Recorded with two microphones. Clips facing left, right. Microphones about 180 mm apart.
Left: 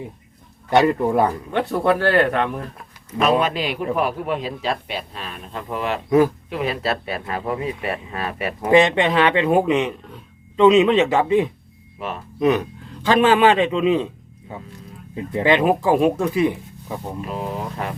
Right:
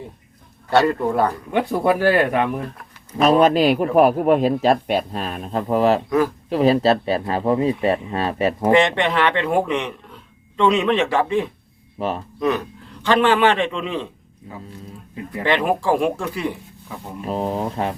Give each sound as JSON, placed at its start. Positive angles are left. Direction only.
{"t": 0.7, "sound": "a man's voice", "side_deg": 15}
{"t": 1.5, "sound": "speech", "side_deg": -10}
{"t": 3.2, "sound": "a man's voice", "side_deg": -40}
{"t": 6.1, "sound": "speech", "side_deg": 20}
{"t": 6.5, "sound": "speech", "side_deg": -35}
{"t": 8.7, "sound": "speech", "side_deg": 20}
{"t": 11.9, "sound": "speech", "side_deg": -30}
{"t": 12.4, "sound": "a man's voice", "side_deg": 20}
{"t": 15.1, "sound": "speech", "side_deg": 25}
{"t": 17.2, "sound": "speech", "side_deg": -35}